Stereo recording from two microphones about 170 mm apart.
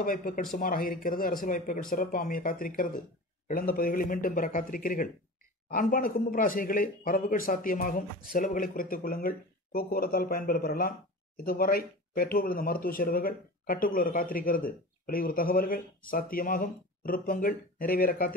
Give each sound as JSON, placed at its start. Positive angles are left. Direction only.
{"t": 0.0, "sound": "speech", "side_deg": 55}